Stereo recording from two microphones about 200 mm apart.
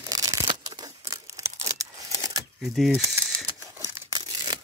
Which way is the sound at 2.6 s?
Centre (ahead or behind).